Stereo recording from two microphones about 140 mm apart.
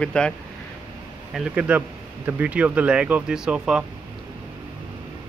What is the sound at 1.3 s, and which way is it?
Speech, 5° right (ahead or behind).